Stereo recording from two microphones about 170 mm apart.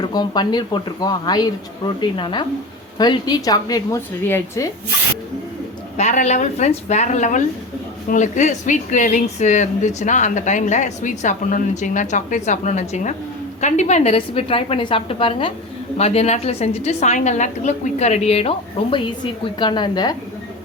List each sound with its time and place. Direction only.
0.0 s speech: 25° left (ahead or behind)
6.0 s a woman's voice: 45° left (ahead or behind); by 20.1 s 25° left (ahead or behind)